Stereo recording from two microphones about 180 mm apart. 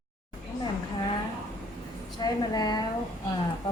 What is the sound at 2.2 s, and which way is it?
Speech, 20° left (ahead or behind).